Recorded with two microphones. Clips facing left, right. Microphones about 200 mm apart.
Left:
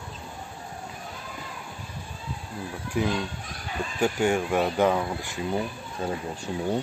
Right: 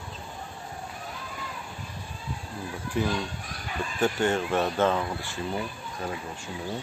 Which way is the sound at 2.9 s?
10° left (ahead or behind).